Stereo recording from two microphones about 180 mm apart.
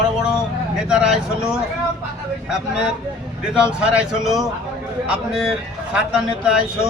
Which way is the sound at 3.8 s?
5° right (ahead or behind).